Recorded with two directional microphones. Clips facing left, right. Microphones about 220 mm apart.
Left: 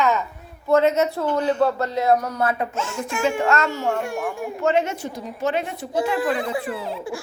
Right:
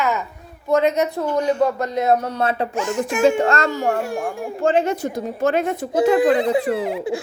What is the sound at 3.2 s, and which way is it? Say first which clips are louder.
A woman's voice: right 4 dB; 35° right (ahead or behind).